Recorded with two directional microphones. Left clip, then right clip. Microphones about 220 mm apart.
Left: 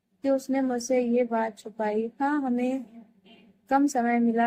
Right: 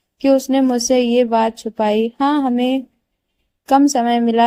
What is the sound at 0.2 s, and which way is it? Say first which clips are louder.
Speech: right 11 dB; 40° right (ahead or behind).